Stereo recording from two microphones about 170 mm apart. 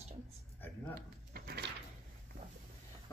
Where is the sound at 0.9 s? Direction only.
65° right (ahead or behind).